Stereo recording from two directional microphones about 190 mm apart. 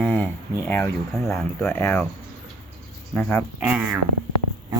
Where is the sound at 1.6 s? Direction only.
10° left (ahead or behind).